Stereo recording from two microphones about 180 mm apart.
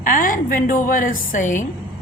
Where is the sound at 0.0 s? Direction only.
50° left (ahead or behind).